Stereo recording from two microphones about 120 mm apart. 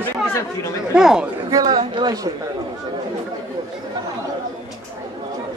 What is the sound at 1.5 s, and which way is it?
Speech, 30° right (ahead or behind).